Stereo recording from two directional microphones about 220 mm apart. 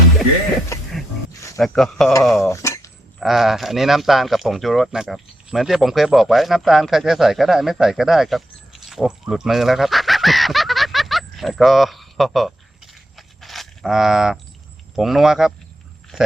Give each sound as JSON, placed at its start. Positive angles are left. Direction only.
{"t": 1.5, "sound": "speech", "side_deg": 0}
{"t": 2.5, "sound": "dishes", "side_deg": 15}
{"t": 3.2, "sound": "speech", "side_deg": 0}
{"t": 8.9, "sound": "a sound", "side_deg": 0}
{"t": 14.9, "sound": "speech", "side_deg": 0}
{"t": 16.1, "sound": "a sound", "side_deg": -5}